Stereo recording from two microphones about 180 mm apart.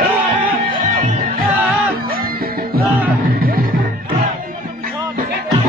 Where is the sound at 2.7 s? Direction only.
55° right (ahead or behind).